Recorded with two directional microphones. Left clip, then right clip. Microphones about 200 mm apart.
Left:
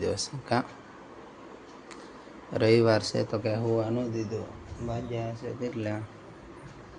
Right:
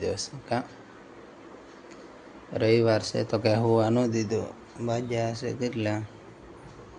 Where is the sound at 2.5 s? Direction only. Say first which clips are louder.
Even; centre (ahead or behind).